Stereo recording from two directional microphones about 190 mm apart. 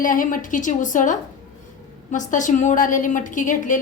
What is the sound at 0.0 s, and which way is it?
A woman's voice, 45° left (ahead or behind).